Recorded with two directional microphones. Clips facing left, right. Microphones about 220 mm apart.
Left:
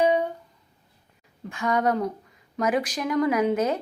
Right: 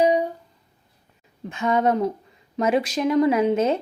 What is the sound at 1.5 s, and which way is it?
Speech, 20° right (ahead or behind).